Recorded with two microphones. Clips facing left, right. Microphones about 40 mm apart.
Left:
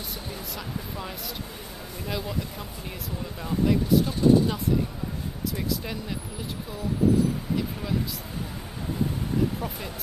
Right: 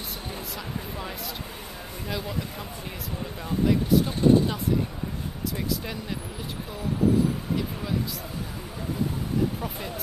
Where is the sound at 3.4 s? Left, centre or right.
Centre.